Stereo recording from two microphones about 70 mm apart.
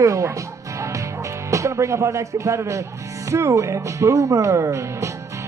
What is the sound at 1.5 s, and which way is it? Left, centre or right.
Speech, right.